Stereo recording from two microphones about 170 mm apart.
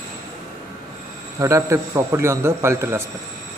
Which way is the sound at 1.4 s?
15° right (ahead or behind).